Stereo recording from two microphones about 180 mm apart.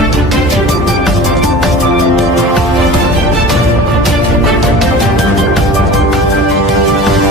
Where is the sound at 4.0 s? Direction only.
Centre (ahead or behind).